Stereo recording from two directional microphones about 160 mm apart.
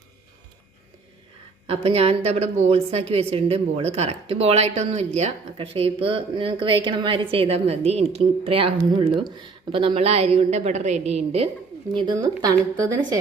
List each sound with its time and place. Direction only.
1.6 s a woman's voice: 40° right (ahead or behind)
12.0 s a woman's voice: 25° right (ahead or behind)